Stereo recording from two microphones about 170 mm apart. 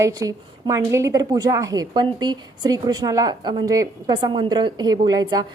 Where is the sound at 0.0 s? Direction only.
20° right (ahead or behind).